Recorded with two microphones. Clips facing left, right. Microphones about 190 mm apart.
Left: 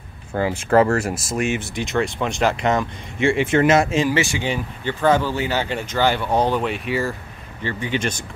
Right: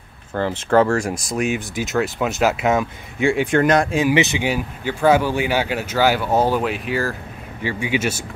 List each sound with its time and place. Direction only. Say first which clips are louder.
0.3 s speech: even; 10° left (ahead or behind)
4.1 s speech: right 3 dB; 20° right (ahead or behind)